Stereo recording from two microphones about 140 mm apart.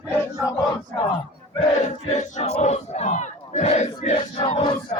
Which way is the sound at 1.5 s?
45° left (ahead or behind).